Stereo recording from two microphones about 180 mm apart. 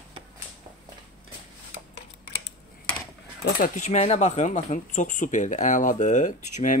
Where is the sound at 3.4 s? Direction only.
50° left (ahead or behind).